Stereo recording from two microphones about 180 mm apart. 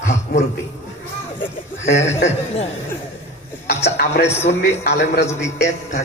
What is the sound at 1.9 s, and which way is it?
Speech, 40° left (ahead or behind).